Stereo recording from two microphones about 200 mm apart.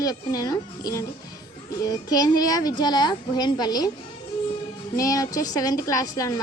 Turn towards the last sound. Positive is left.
turn(degrees=20)  # may be behind; listen again after turning